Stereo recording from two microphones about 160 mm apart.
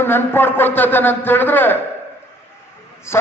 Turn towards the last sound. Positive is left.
turn(degrees=15)  # may be behind; listen again after turning